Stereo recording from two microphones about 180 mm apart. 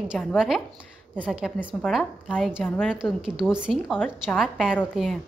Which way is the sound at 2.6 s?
10° left (ahead or behind).